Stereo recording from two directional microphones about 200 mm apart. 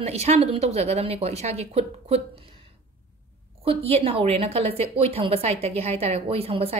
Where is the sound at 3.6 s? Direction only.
30° right (ahead or behind).